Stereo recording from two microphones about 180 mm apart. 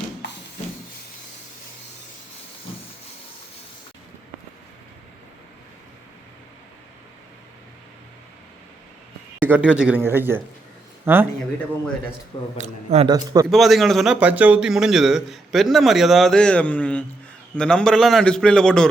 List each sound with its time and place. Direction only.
9.4 s speech: 10° right (ahead or behind)
12.5 s a man's voice: 40° right (ahead or behind)
13.1 s a man's voice: 20° right (ahead or behind)
13.5 s a man's voice: centre (ahead or behind)